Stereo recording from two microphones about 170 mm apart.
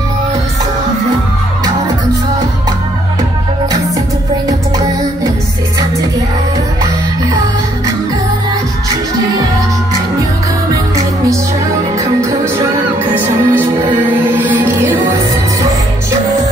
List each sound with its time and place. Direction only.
4.5 s music: 20° right (ahead or behind)
13.0 s music: 10° right (ahead or behind)